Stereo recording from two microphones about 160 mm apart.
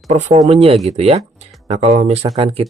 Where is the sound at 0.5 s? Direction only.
35° right (ahead or behind).